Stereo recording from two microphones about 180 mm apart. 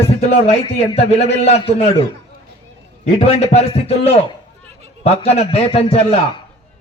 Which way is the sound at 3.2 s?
35° left (ahead or behind).